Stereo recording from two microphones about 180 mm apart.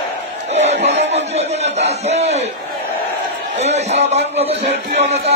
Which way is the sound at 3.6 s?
40° right (ahead or behind).